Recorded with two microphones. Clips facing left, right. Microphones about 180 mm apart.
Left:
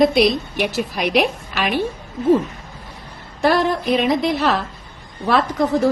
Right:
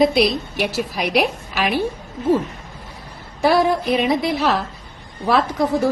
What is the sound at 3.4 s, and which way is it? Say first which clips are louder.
A woman's voice: right 1 dB; 10° right (ahead or behind).